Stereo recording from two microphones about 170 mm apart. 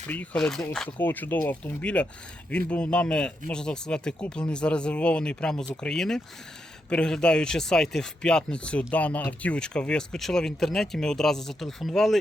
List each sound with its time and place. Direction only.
0.1 s a man's voice: 10° left (ahead or behind)